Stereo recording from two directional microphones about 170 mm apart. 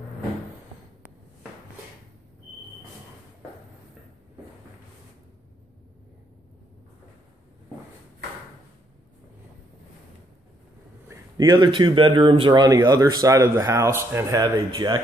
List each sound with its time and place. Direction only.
11.1 s speech: 20° right (ahead or behind)